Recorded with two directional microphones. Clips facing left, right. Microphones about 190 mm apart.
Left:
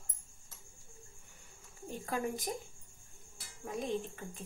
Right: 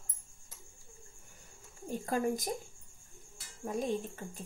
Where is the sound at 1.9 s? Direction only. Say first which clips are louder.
Right 4 dB; 40° right (ahead or behind).